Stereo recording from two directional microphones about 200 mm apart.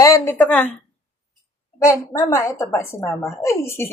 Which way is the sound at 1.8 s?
15° left (ahead or behind).